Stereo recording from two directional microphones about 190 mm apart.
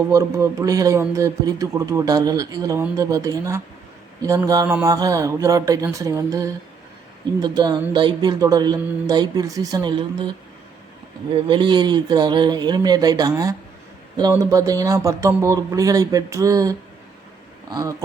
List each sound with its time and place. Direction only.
0.1 s speech: 15° right (ahead or behind)
11.4 s speech: 25° right (ahead or behind)